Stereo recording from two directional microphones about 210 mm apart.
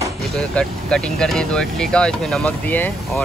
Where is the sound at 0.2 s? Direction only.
5° left (ahead or behind).